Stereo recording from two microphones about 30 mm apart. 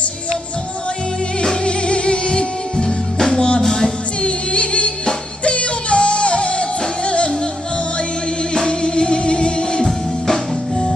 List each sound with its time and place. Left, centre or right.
1.4 s music: left
2.8 s music: centre
3.3 s music: left
3.6 s music: left
4.2 s music: left
8.5 s music: left